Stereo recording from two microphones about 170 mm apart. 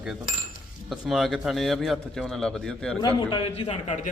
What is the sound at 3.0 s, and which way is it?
A man's voice, 30° left (ahead or behind).